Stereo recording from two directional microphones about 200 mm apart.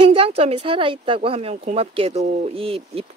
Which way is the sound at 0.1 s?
30° right (ahead or behind).